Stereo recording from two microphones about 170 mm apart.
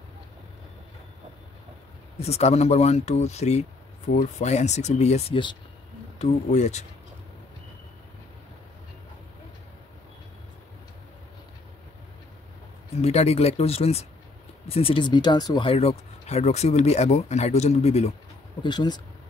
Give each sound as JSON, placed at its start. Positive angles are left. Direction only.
{"t": 2.1, "sound": "speech", "side_deg": 40}
{"t": 6.1, "sound": "speech", "side_deg": 40}
{"t": 12.9, "sound": "speech", "side_deg": 40}
{"t": 18.6, "sound": "speech", "side_deg": 25}